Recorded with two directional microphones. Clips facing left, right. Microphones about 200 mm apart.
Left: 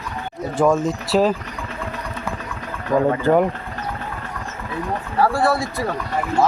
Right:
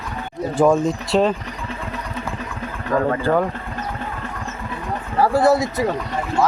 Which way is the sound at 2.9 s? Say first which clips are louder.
Left 2 dB; 15° left (ahead or behind).